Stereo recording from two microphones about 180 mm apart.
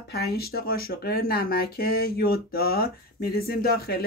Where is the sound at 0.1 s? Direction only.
60° left (ahead or behind).